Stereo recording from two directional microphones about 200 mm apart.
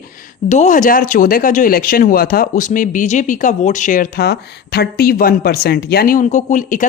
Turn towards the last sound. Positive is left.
turn(degrees=40)  # may be behind; listen again after turning